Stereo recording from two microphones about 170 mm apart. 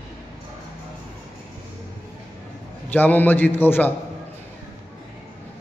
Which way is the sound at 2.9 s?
10° left (ahead or behind).